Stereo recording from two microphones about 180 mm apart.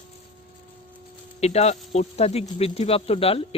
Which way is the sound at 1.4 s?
35° left (ahead or behind).